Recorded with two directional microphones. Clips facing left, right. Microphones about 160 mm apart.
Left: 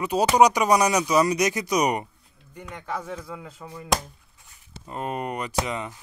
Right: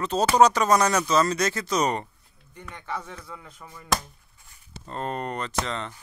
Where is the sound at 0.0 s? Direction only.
15° left (ahead or behind).